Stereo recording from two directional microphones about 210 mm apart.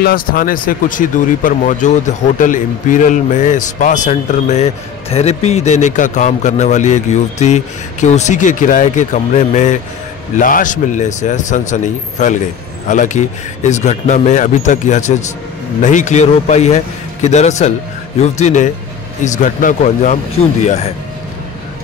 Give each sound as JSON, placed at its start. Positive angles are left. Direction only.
{"t": 0.0, "sound": "speech", "side_deg": 45}